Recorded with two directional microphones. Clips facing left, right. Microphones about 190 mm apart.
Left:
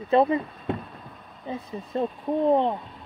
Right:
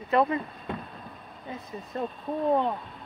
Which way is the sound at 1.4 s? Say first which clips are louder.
Left 5 dB; 25° left (ahead or behind).